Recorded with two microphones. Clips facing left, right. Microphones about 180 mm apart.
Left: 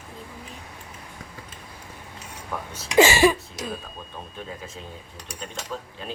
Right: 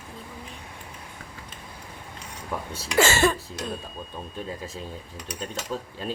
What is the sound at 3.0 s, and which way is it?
Speech, 15° left (ahead or behind).